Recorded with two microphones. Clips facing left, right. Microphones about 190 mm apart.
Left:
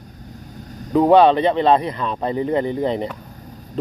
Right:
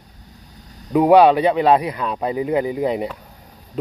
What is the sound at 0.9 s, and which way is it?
Speech, 10° right (ahead or behind).